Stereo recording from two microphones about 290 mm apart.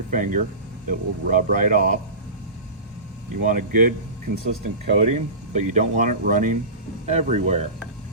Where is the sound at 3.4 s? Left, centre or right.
Right.